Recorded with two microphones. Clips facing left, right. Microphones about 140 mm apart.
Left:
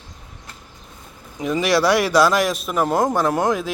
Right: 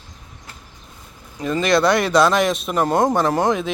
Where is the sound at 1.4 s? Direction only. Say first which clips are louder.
Right 1 dB; 15° left (ahead or behind).